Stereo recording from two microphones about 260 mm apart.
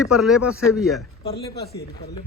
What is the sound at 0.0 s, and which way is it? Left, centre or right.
A man's voice, centre.